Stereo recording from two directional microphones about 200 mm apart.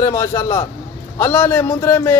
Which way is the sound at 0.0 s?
15° left (ahead or behind).